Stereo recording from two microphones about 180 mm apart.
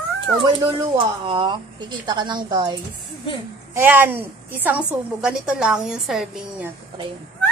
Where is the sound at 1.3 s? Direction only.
25° right (ahead or behind).